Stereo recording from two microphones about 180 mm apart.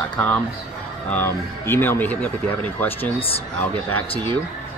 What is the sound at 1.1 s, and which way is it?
Speech, 10° left (ahead or behind).